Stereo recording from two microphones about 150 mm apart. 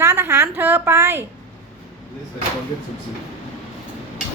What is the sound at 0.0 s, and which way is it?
A woman's voice, 20° right (ahead or behind).